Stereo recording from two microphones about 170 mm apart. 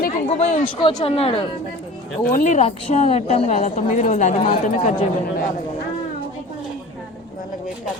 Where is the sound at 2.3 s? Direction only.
50° left (ahead or behind).